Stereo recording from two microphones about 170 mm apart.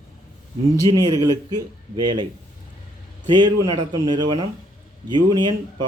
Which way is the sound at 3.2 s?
25° right (ahead or behind).